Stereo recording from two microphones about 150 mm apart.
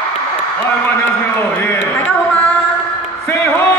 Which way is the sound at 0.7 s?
15° left (ahead or behind).